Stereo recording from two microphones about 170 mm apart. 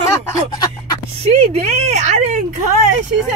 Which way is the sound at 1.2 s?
35° right (ahead or behind).